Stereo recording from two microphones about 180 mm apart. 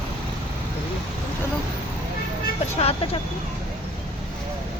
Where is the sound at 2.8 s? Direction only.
35° left (ahead or behind).